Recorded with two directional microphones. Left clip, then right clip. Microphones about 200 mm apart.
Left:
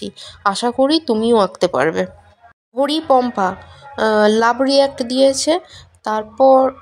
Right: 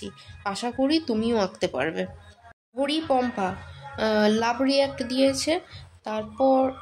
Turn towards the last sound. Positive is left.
turn(degrees=35)  # may be behind; listen again after turning